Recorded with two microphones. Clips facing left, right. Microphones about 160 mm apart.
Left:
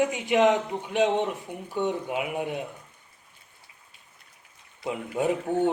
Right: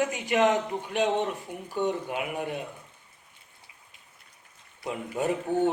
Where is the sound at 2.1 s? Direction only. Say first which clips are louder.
Left 2 dB; 10° left (ahead or behind).